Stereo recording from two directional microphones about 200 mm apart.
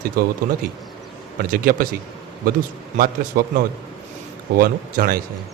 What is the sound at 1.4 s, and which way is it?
Speech, 45° right (ahead or behind).